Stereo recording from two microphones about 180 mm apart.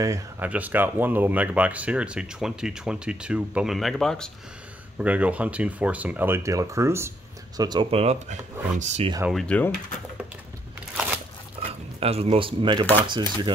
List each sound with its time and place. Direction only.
0.0 s speech: 20° right (ahead or behind); by 9.1 s 40° right (ahead or behind)
9.3 s speech: 5° left (ahead or behind)
11.6 s dog: 35° right (ahead or behind)
12.0 s speech: 35° right (ahead or behind)